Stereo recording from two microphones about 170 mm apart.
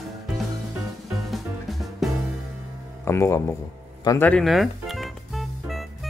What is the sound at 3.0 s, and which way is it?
Music, 15° left (ahead or behind).